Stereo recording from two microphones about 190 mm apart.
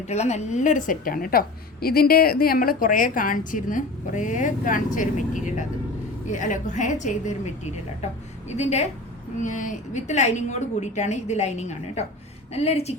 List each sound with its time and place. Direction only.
0.1 s a woman's voice: 35° left (ahead or behind)